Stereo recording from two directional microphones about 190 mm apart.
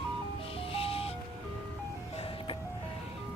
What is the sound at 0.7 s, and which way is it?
Music, 30° left (ahead or behind).